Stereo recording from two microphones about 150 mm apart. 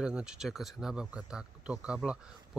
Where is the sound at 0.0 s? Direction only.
5° right (ahead or behind).